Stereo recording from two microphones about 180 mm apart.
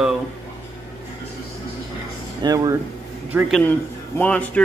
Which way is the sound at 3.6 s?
10° left (ahead or behind).